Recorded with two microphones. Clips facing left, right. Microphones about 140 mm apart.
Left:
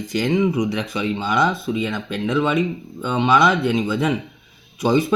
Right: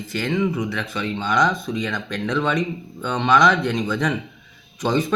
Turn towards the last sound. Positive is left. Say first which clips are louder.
# left 3 dB
turn(degrees=10)  # may be behind; listen again after turning